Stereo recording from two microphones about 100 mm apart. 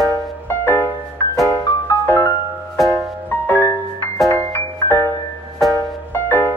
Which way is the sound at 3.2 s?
20° left (ahead or behind).